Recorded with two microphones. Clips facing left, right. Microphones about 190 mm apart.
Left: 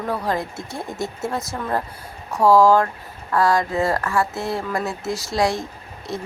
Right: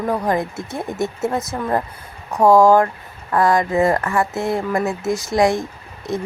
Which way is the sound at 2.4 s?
15° right (ahead or behind).